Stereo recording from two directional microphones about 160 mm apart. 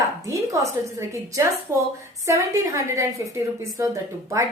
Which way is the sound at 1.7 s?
15° right (ahead or behind).